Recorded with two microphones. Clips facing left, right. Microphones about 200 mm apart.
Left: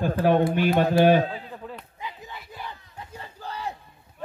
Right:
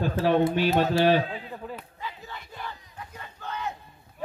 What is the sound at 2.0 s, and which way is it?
Battle cry, 15° left (ahead or behind).